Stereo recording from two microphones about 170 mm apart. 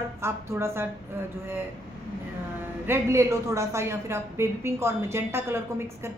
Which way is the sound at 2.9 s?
15° right (ahead or behind).